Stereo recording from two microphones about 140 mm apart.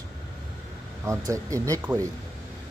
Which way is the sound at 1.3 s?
25° right (ahead or behind).